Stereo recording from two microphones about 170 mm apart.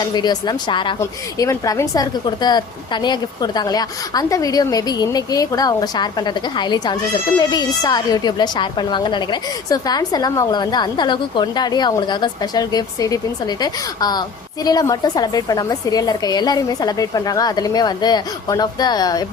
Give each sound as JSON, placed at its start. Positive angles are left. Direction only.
{"t": 0.0, "sound": "a woman's voice", "side_deg": 25}